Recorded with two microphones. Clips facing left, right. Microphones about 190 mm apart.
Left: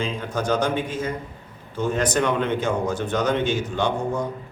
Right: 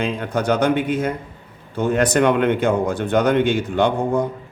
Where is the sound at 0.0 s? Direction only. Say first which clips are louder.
Right 4 dB; 60° right (ahead or behind).